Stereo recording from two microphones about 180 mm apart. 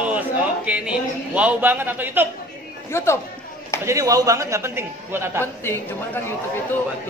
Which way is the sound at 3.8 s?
20° right (ahead or behind).